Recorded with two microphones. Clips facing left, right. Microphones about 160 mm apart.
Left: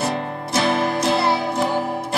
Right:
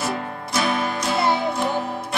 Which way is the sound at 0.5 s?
25° left (ahead or behind).